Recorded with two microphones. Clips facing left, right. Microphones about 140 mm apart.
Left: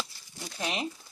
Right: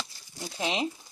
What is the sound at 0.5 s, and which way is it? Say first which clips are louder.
Speech: right 3 dB; 20° right (ahead or behind).